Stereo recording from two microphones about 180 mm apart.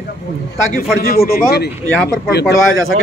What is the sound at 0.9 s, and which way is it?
Speech, 55° left (ahead or behind).